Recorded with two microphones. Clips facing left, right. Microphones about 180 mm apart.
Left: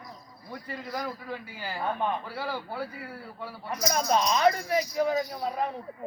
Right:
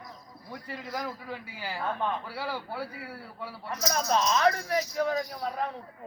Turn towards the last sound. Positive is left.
turn(degrees=5)  # may be behind; listen again after turning